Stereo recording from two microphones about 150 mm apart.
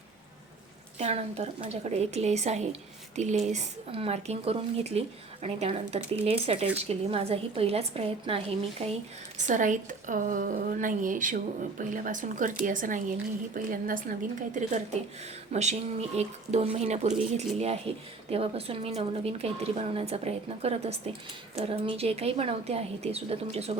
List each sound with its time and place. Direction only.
0.9 s speech: 45° right (ahead or behind)
9.4 s a woman's voice: 55° right (ahead or behind)